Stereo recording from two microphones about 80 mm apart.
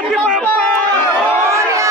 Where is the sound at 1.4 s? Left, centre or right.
Right.